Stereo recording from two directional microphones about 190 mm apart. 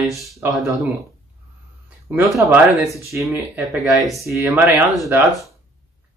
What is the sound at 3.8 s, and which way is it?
Speech, centre (ahead or behind).